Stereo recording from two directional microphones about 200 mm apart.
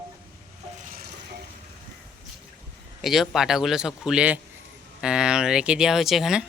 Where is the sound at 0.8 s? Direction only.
50° right (ahead or behind).